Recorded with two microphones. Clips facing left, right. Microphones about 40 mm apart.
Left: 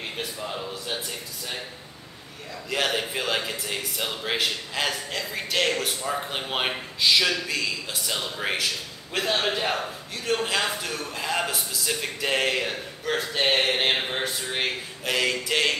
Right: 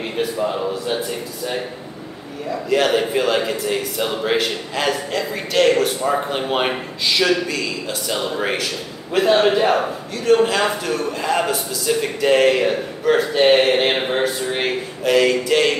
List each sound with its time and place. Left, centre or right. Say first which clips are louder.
0.4 s speech: right 11 dB; centre
2.7 s a man's voice: right 9 dB; centre
5.9 s speech: right 9 dB; right
7.0 s a man's voice: right 4 dB; centre